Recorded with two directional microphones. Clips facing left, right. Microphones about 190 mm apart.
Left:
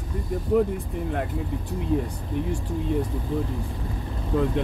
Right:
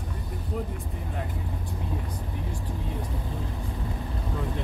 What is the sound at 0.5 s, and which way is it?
Speech, 75° left (ahead or behind).